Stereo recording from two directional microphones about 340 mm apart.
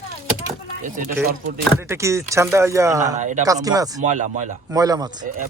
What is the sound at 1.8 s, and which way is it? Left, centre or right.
Speech, centre.